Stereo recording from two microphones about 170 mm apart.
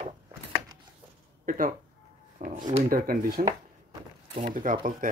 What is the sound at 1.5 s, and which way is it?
Speech, 55° right (ahead or behind).